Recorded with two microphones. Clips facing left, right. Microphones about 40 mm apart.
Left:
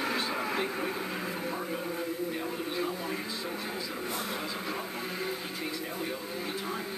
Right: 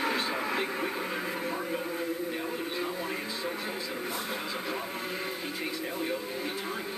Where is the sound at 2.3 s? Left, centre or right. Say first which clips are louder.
Even; centre.